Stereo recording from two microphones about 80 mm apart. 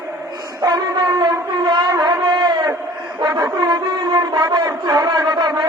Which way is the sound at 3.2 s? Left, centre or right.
Right.